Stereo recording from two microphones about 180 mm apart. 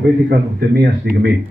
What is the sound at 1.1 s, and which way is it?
Speech, 70° right (ahead or behind).